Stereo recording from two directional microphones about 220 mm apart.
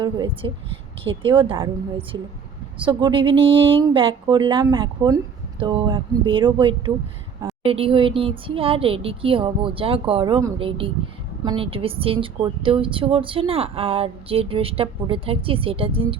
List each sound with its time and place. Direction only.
0.0 s a woman's voice: 20° right (ahead or behind)